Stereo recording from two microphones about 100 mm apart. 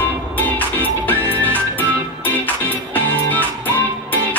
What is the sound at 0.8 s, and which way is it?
Music, 15° left (ahead or behind).